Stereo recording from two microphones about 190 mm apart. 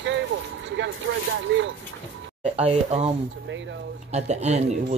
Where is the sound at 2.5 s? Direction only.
35° right (ahead or behind).